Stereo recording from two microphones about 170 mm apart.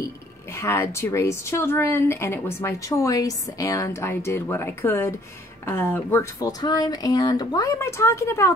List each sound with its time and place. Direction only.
0.0 s a woman's voice: 15° left (ahead or behind)